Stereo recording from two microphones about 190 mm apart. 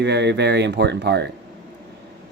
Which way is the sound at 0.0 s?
65° right (ahead or behind).